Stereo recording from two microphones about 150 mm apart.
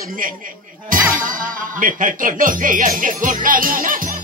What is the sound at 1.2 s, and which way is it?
Speech, 65° right (ahead or behind).